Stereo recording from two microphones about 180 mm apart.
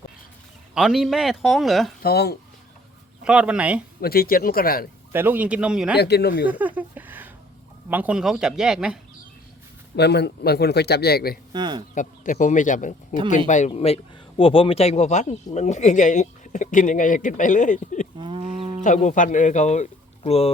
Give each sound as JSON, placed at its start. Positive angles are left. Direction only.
{"t": 0.7, "sound": "speech", "side_deg": 0}
{"t": 2.0, "sound": "speech", "side_deg": 60}
{"t": 3.2, "sound": "speech", "side_deg": -5}
{"t": 4.0, "sound": "a man's voice", "side_deg": 55}
{"t": 5.1, "sound": "speech", "side_deg": -10}
{"t": 6.0, "sound": "a man's voice", "side_deg": 65}
{"t": 6.4, "sound": "a sound", "side_deg": -10}
{"t": 7.9, "sound": "speech", "side_deg": -10}
{"t": 9.9, "sound": "a man's voice", "side_deg": 65}
{"t": 11.5, "sound": "speech", "side_deg": -25}
{"t": 11.9, "sound": "speech", "side_deg": 45}
{"t": 18.2, "sound": "livestock", "side_deg": -30}
{"t": 18.8, "sound": "speech", "side_deg": 45}